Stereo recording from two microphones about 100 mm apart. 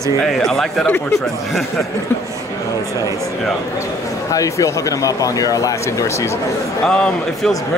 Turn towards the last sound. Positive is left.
turn(degrees=5)  # may be behind; listen again after turning